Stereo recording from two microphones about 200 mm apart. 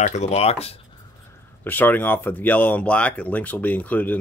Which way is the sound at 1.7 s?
10° left (ahead or behind).